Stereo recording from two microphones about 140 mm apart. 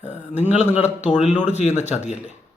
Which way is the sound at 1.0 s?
55° left (ahead or behind).